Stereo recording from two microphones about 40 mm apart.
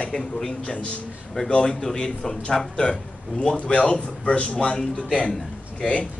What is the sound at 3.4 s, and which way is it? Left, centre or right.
Speech, left.